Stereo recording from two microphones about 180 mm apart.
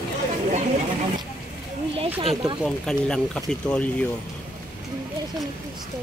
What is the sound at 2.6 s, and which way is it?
Speech, 5° left (ahead or behind).